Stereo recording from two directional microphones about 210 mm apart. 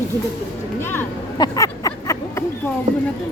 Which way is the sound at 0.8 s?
10° left (ahead or behind).